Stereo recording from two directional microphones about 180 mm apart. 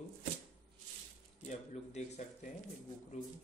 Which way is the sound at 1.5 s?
40° left (ahead or behind).